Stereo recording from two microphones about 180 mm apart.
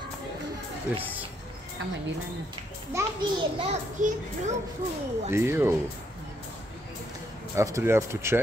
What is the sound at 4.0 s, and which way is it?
Speech, 45° right (ahead or behind).